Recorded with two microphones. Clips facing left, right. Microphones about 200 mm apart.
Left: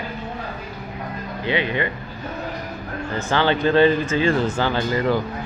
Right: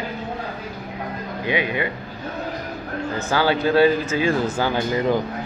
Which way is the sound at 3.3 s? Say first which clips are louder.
Left 1 dB; 10° right (ahead or behind).